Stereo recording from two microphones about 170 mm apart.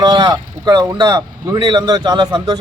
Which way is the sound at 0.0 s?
25° right (ahead or behind).